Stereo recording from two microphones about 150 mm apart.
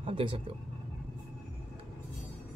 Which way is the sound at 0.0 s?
35° right (ahead or behind).